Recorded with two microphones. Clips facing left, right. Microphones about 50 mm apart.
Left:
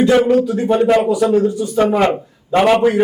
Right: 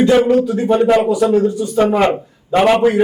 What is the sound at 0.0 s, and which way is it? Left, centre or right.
A man's voice, centre.